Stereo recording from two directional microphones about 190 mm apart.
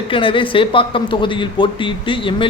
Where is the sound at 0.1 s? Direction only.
25° left (ahead or behind).